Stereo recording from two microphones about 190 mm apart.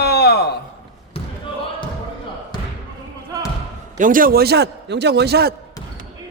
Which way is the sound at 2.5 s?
20° left (ahead or behind).